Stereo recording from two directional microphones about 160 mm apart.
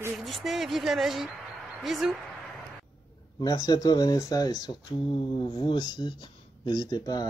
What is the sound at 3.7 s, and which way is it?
Speech, 25° left (ahead or behind).